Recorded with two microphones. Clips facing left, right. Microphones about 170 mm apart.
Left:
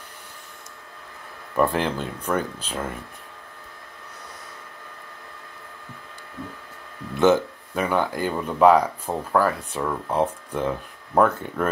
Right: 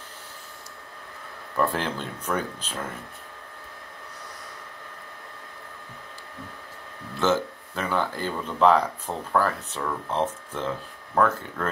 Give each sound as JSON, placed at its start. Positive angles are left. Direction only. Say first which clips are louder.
{"t": 1.6, "sound": "speech", "louder": "left 4 dB", "side_deg": 10}
{"t": 7.2, "sound": "speech", "louder": "left 6 dB", "side_deg": 15}